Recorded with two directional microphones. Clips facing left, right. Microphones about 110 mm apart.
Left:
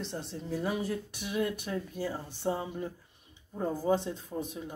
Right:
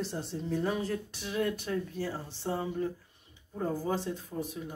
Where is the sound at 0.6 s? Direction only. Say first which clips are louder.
Left 2 dB; 10° left (ahead or behind).